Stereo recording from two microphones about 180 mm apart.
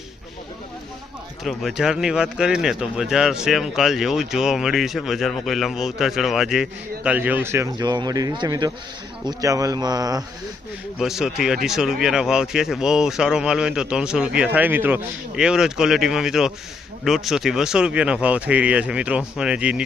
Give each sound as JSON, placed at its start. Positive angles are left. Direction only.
{"t": 1.5, "sound": "speech", "side_deg": 0}
{"t": 11.0, "sound": "speech", "side_deg": 0}